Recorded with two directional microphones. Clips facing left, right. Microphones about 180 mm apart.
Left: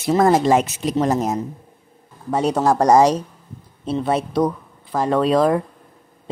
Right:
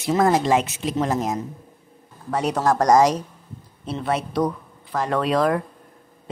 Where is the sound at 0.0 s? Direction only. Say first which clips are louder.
Left 3 dB; 35° left (ahead or behind).